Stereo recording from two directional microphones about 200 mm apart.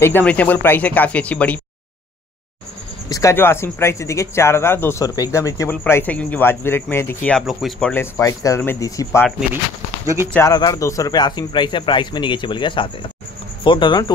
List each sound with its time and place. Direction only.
0.0 s speech: 10° left (ahead or behind)
3.1 s speech: 15° left (ahead or behind)
7.9 s speech: 15° left (ahead or behind)
10.3 s speech: 15° left (ahead or behind)